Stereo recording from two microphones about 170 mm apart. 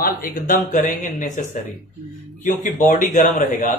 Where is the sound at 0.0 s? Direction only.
55° left (ahead or behind).